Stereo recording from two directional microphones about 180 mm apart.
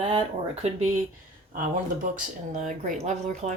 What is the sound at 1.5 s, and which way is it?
Speech, 50° right (ahead or behind).